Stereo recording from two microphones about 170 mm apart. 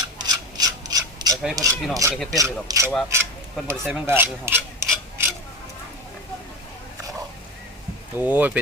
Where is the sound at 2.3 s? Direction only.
20° right (ahead or behind).